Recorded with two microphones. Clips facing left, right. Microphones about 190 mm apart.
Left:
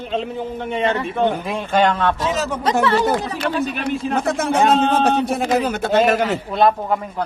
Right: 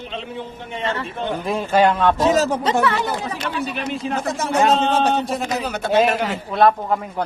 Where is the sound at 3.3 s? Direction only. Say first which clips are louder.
Left 4 dB; 45° left (ahead or behind).